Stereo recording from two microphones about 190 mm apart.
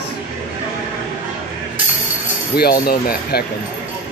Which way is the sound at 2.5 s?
55° left (ahead or behind).